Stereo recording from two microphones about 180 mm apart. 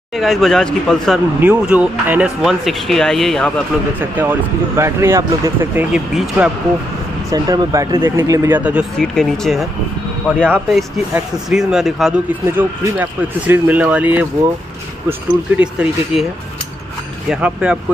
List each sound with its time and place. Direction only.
0.2 s speech: centre (ahead or behind)
1.4 s speech: 10° right (ahead or behind)
4.0 s speech: 10° right (ahead or behind)
7.2 s speech: 20° right (ahead or behind)
8.9 s speech: 5° left (ahead or behind)
17.3 s speech: 5° right (ahead or behind)